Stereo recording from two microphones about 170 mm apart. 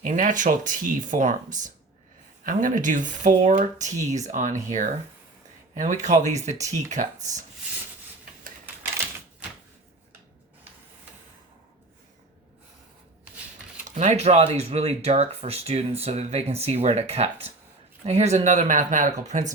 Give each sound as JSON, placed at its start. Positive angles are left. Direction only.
{"t": 0.0, "sound": "speech", "side_deg": -50}
{"t": 13.9, "sound": "speech", "side_deg": -40}